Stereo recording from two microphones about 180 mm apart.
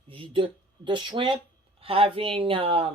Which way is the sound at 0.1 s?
30° right (ahead or behind).